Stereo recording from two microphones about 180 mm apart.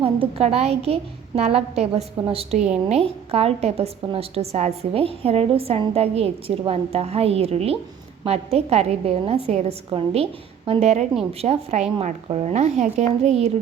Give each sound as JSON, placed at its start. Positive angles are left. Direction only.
{"t": 0.0, "sound": "a woman's voice", "side_deg": -35}